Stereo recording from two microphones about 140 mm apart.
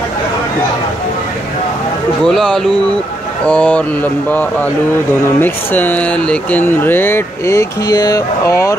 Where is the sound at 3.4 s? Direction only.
10° left (ahead or behind).